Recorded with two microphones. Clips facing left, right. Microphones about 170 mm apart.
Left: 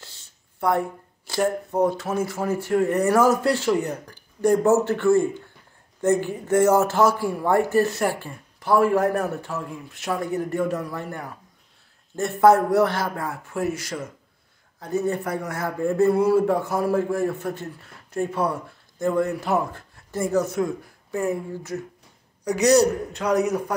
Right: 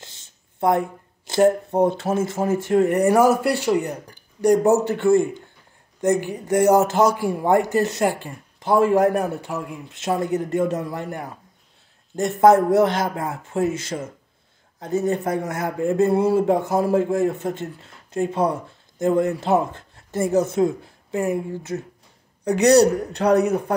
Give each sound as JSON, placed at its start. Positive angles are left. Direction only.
{"t": 0.0, "sound": "a man's voice", "side_deg": -20}
{"t": 22.6, "sound": "a woman's voice", "side_deg": -65}